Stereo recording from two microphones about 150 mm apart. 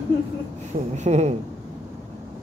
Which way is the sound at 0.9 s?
50° right (ahead or behind).